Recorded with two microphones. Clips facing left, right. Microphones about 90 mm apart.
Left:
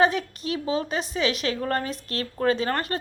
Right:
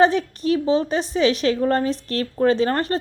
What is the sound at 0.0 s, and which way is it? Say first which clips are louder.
A woman's voice: right 5 dB; 35° right (ahead or behind).